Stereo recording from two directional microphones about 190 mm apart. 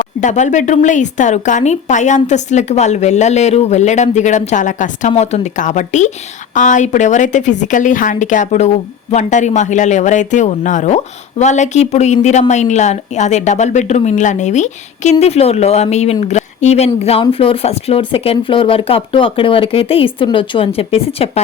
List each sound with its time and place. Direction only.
0.2 s a woman's voice: 40° left (ahead or behind)